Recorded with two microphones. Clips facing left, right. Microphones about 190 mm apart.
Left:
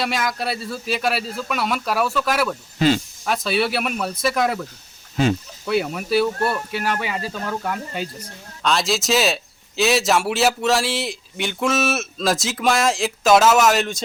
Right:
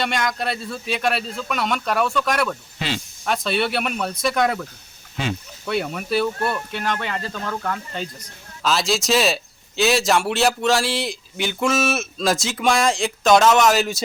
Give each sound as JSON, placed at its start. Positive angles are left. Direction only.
{"t": 0.0, "sound": "speech", "side_deg": 5}
{"t": 2.7, "sound": "speech", "side_deg": 45}
{"t": 3.2, "sound": "speech", "side_deg": 0}
{"t": 5.6, "sound": "speech", "side_deg": 0}
{"t": 8.6, "sound": "speech", "side_deg": 0}